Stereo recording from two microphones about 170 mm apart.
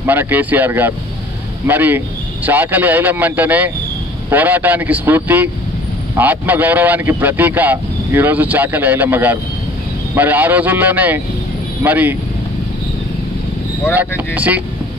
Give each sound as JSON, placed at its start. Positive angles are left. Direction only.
{"t": 0.0, "sound": "a man's voice", "side_deg": -10}
{"t": 13.9, "sound": "a man's voice", "side_deg": -10}